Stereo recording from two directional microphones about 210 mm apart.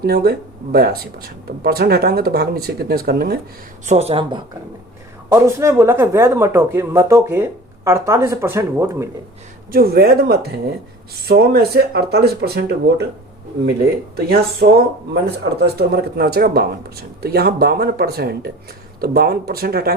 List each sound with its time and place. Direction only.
0.0 s speech: 50° right (ahead or behind)
3.8 s a woman's voice: 30° right (ahead or behind)
5.3 s speech: 15° right (ahead or behind)
9.7 s speech: 45° right (ahead or behind)
14.2 s speech: 45° right (ahead or behind)